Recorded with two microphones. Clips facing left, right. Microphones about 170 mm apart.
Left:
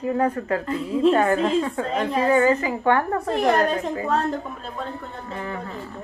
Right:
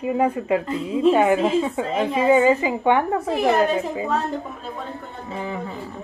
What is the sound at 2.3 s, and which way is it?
Speech, 20° right (ahead or behind).